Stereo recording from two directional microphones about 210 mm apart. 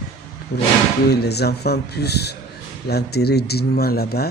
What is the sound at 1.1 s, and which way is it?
Speech, 50° left (ahead or behind).